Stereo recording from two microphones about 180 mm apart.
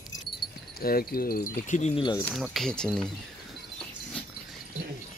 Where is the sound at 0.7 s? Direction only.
55° left (ahead or behind); by 2.0 s 40° left (ahead or behind).